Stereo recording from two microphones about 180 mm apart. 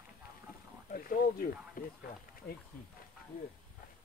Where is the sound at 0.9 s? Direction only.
50° left (ahead or behind).